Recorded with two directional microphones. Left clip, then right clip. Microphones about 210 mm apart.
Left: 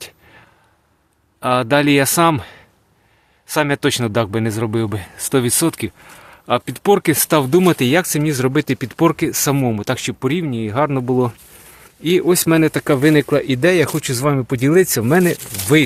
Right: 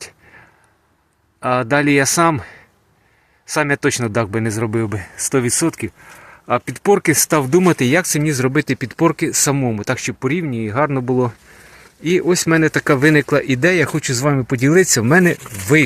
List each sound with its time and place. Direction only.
1.4 s speech: centre (ahead or behind)